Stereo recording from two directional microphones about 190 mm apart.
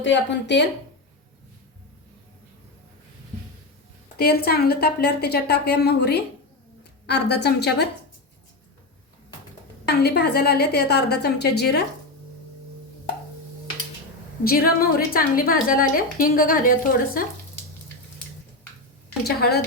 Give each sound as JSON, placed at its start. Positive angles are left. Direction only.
{"t": 0.0, "sound": "speech", "side_deg": 70}
{"t": 4.2, "sound": "a woman's voice", "side_deg": 55}
{"t": 9.8, "sound": "a woman's voice", "side_deg": 60}
{"t": 14.4, "sound": "a woman's voice", "side_deg": 50}
{"t": 19.2, "sound": "a woman's voice", "side_deg": 55}